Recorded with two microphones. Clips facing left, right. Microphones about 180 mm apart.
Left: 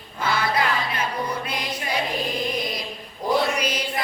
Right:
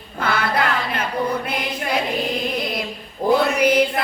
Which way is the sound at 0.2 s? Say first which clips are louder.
Right 2 dB; 55° right (ahead or behind).